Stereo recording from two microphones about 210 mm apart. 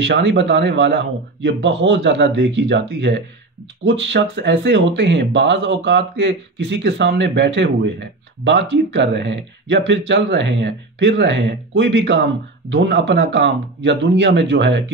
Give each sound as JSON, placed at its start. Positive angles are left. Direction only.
{"t": 0.0, "sound": "speech", "side_deg": -55}